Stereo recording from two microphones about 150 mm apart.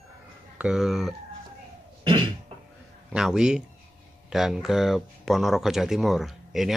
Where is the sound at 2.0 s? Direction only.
30° right (ahead or behind).